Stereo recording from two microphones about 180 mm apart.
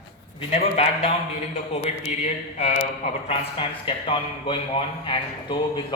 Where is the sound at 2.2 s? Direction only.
40° left (ahead or behind).